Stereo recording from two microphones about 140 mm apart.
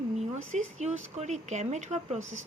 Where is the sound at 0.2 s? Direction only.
55° right (ahead or behind).